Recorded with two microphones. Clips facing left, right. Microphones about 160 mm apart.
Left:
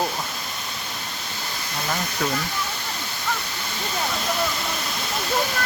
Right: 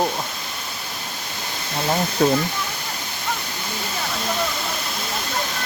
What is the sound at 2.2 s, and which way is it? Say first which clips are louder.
Speech: right 9 dB; 30° right (ahead or behind).